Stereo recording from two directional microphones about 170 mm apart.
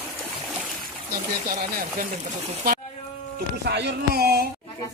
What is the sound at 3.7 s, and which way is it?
Speech, 80° right.